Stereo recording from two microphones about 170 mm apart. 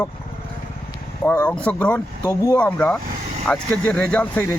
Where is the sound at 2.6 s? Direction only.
5° left (ahead or behind).